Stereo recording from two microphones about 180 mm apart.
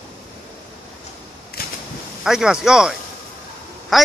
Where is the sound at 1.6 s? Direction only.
55° left (ahead or behind).